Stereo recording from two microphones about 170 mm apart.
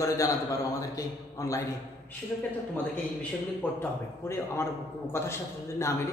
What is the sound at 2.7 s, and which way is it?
Speech, 10° left (ahead or behind).